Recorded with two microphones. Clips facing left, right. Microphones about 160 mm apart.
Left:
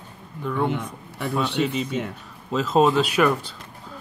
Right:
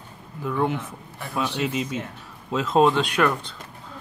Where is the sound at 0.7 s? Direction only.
65° left (ahead or behind).